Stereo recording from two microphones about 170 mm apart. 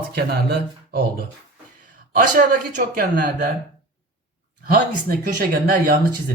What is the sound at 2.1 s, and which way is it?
A man's voice, 55° right (ahead or behind).